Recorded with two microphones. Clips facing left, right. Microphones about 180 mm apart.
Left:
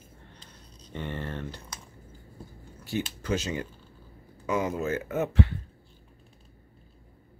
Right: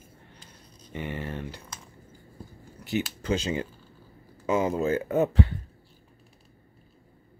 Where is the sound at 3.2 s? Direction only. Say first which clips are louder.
Right 2 dB; 25° right (ahead or behind).